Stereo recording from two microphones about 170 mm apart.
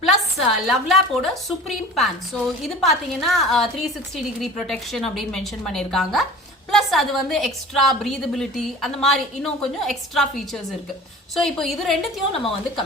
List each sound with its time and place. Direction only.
0.0 s a woman's voice: centre (ahead or behind)